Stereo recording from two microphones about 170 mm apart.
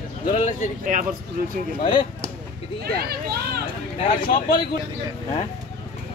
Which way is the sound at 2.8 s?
70° right (ahead or behind).